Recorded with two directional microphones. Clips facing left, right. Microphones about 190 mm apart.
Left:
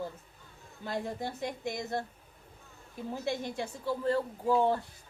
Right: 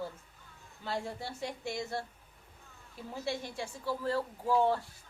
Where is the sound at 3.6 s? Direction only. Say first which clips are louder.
Left 3 dB; 20° left (ahead or behind).